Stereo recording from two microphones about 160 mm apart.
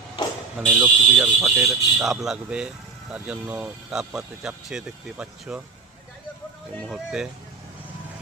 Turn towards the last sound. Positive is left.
turn(degrees=-5)  # may be behind; listen again after turning